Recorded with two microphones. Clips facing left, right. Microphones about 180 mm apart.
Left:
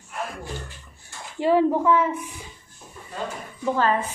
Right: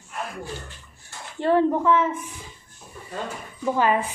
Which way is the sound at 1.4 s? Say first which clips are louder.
Left 1 dB; 10° left (ahead or behind).